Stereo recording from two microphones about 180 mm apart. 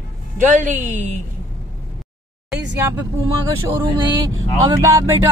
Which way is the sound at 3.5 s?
15° right (ahead or behind).